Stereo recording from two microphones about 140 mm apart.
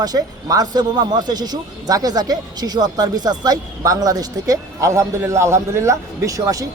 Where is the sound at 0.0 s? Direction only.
25° right (ahead or behind).